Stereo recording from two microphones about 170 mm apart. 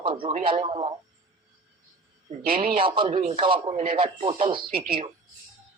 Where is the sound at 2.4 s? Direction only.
60° right (ahead or behind).